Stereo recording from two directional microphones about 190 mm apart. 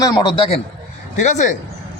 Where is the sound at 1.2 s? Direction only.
40° left (ahead or behind).